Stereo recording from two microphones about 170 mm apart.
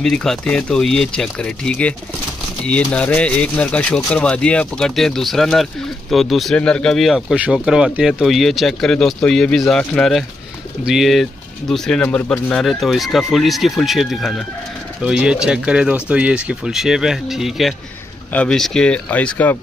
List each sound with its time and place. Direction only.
0.0 s speech: 5° left (ahead or behind)